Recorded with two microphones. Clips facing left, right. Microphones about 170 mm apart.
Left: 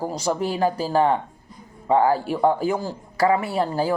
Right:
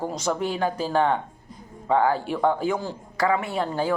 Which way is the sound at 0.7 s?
35° left (ahead or behind).